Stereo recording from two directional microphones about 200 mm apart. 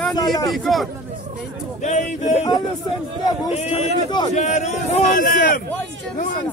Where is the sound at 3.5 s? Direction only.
35° left (ahead or behind).